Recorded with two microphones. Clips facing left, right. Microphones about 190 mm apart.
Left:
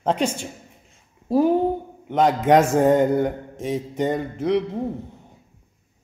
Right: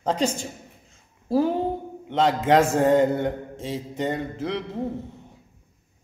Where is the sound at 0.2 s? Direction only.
35° right (ahead or behind).